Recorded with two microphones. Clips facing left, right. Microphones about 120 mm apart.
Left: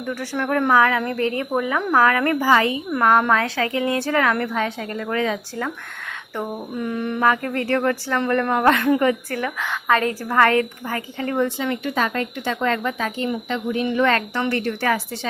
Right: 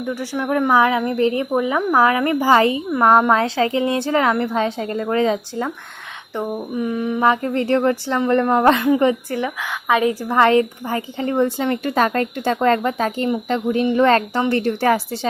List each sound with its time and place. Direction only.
0.1 s speech: 15° right (ahead or behind)
2.4 s a woman's voice: 30° right (ahead or behind)
6.7 s mantra: 5° right (ahead or behind)
7.2 s a woman's voice: 20° right (ahead or behind)